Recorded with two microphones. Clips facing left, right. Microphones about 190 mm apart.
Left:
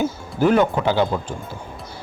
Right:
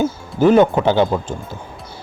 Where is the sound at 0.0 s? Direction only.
20° right (ahead or behind).